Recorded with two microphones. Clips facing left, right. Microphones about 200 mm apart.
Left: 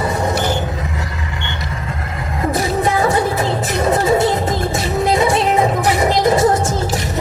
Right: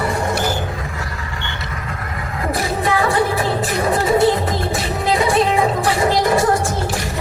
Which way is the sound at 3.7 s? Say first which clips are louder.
Left 4 dB; 25° left (ahead or behind).